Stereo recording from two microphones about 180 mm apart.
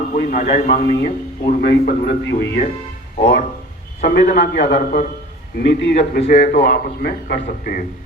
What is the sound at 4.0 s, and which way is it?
A man's voice, 50° left (ahead or behind).